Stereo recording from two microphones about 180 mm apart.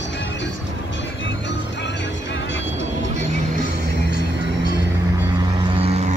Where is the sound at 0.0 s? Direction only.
90° left.